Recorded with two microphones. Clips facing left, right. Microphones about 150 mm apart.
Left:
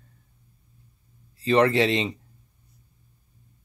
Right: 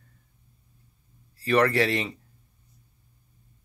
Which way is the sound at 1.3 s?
20° left (ahead or behind).